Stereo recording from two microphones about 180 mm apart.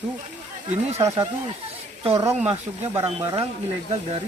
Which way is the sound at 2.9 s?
15° right (ahead or behind).